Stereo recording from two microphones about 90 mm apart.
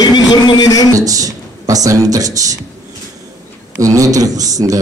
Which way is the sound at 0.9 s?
40° right (ahead or behind).